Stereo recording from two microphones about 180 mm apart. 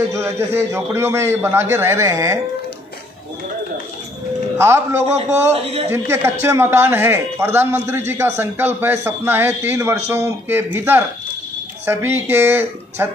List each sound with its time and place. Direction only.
0.1 s a man's voice: 15° right (ahead or behind)
4.6 s a man's voice: 15° right (ahead or behind)
5.5 s a woman's voice: 35° right (ahead or behind)
5.9 s a man's voice: 15° right (ahead or behind)